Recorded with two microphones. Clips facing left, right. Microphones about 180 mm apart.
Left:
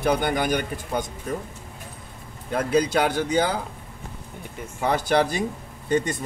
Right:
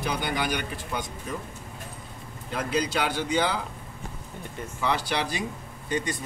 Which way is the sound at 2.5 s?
50° left (ahead or behind).